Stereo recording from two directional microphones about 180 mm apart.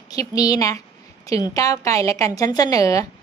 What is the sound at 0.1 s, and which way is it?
A woman's voice, 20° left (ahead or behind).